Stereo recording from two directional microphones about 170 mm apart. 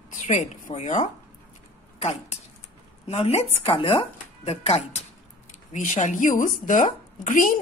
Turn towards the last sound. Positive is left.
turn(degrees=50)  # may be behind; listen again after turning